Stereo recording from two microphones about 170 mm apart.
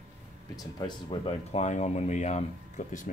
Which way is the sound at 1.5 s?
45° left (ahead or behind).